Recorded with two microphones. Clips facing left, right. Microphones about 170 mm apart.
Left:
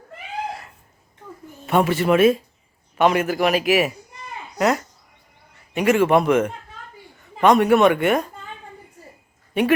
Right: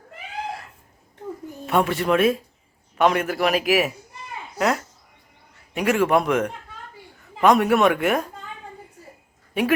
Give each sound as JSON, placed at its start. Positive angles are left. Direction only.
{"t": 1.6, "sound": "a man's voice", "side_deg": 0}